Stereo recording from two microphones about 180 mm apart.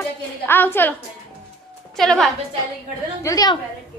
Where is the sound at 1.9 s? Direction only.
Centre (ahead or behind).